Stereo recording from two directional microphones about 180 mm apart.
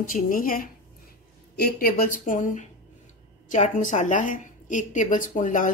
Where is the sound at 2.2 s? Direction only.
45° left (ahead or behind).